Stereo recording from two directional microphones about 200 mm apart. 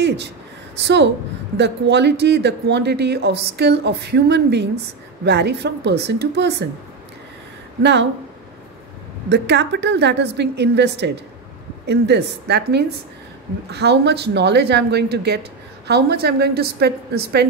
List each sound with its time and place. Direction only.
0.8 s speech: 60° right (ahead or behind)
7.8 s speech: 60° right (ahead or behind)
9.3 s a woman's voice: 60° right (ahead or behind)